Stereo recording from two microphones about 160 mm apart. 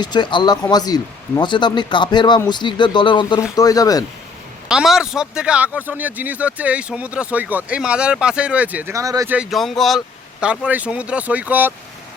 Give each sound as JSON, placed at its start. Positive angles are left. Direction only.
{"t": 0.0, "sound": "speech", "side_deg": 30}
{"t": 4.7, "sound": "speech", "side_deg": -5}
{"t": 9.3, "sound": "speech", "side_deg": -5}